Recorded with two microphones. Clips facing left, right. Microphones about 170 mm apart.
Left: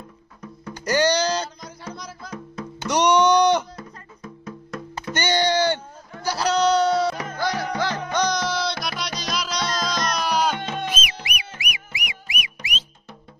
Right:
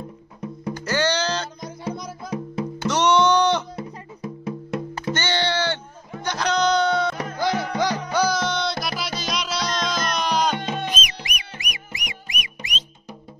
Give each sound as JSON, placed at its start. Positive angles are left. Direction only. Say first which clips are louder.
{"t": 0.7, "sound": "music", "louder": "left 3 dB", "side_deg": 15}
{"t": 2.9, "sound": "music", "louder": "left 1 dB", "side_deg": 15}
{"t": 3.7, "sound": "music", "louder": "right 6 dB", "side_deg": -25}
{"t": 5.1, "sound": "music", "louder": "left 4 dB", "side_deg": 15}
{"t": 7.3, "sound": "music", "louder": "right 2 dB", "side_deg": -20}
{"t": 10.5, "sound": "music", "louder": "right 2 dB", "side_deg": -10}
{"t": 10.8, "sound": "music", "louder": "even", "side_deg": 5}